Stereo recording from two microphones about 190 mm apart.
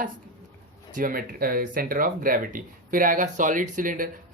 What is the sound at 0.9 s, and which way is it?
Speech, 45° right (ahead or behind).